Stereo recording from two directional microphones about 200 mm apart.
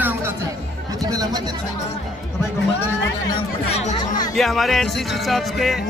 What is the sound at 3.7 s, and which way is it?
Speech, 35° left (ahead or behind).